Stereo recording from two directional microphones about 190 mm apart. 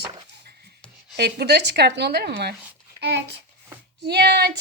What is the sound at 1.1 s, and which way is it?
A woman's voice, 60° right (ahead or behind).